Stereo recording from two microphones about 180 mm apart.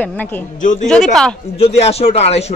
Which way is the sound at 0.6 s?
45° left (ahead or behind).